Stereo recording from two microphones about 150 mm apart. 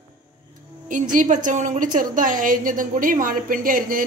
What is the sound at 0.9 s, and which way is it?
A woman's voice, 60° right (ahead or behind).